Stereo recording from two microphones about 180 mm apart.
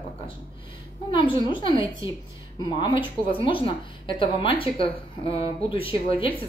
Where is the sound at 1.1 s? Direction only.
25° left (ahead or behind).